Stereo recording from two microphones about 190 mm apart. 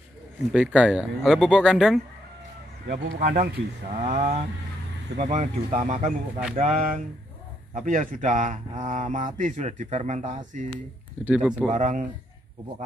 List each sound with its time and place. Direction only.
0.5 s speech: 5° right (ahead or behind)
2.9 s speech: 45° right (ahead or behind)
11.2 s speech: 5° right (ahead or behind)
11.7 s speech: 40° right (ahead or behind)